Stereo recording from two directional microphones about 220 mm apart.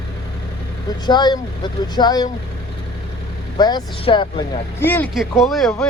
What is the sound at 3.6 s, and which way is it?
Speech, 20° left (ahead or behind).